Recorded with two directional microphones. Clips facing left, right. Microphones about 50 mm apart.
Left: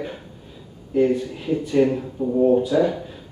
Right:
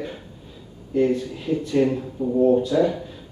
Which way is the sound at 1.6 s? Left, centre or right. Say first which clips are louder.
Left 2 dB; centre.